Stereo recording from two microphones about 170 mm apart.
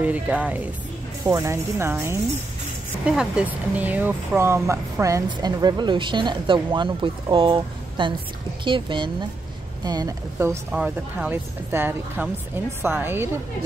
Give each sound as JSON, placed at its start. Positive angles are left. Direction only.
{"t": 0.0, "sound": "speech", "side_deg": -10}
{"t": 10.7, "sound": "speech", "side_deg": -5}